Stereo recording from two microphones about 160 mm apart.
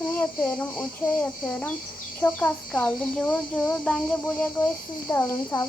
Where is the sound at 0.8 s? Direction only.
10° left (ahead or behind).